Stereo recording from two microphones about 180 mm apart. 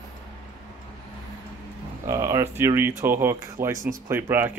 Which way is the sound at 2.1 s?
15° right (ahead or behind).